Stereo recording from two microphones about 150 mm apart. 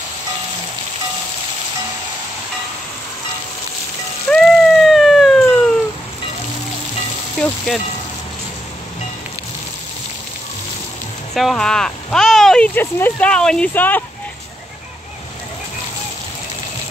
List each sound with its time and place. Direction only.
4.3 s a sound: 5° left (ahead or behind)
7.3 s vehicle: 5° left (ahead or behind)
11.3 s speech: centre (ahead or behind)